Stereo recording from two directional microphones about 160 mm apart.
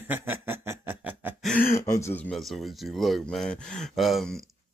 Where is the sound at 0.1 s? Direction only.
15° right (ahead or behind).